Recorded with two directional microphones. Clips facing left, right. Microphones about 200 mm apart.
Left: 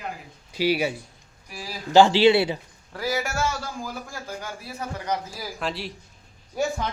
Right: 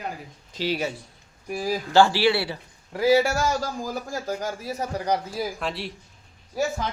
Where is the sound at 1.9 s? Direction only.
20° left (ahead or behind).